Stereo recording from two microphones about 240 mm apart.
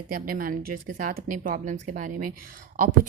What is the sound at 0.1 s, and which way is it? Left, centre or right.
A woman's voice, right.